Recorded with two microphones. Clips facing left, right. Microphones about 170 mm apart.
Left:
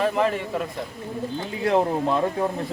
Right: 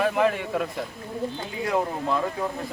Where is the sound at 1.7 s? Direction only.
25° left (ahead or behind).